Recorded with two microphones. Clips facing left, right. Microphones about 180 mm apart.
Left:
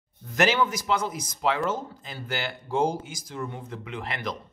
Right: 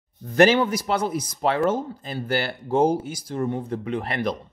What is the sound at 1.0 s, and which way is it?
Speech, 50° right (ahead or behind).